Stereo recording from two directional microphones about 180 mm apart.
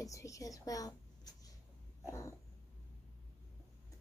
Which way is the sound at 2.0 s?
15° left (ahead or behind).